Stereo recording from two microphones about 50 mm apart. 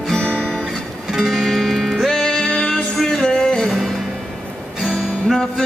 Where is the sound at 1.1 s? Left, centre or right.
Centre.